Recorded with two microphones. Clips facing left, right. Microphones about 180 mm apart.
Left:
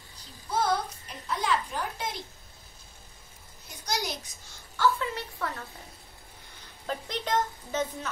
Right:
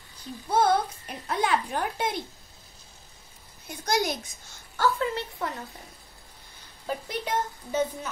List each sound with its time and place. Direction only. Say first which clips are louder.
0.5 s a child's voice: right 5 dB; 55° right (ahead or behind)
3.8 s a child's voice: right 6 dB; 50° right (ahead or behind)
4.7 s a sound: right 1 dB; 35° right (ahead or behind)
6.9 s speech: even; 10° right (ahead or behind)